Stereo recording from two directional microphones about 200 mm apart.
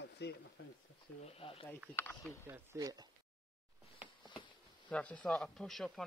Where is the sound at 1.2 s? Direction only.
30° left (ahead or behind).